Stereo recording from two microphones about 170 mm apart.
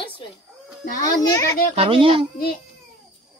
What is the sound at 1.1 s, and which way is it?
Speech, 20° left (ahead or behind).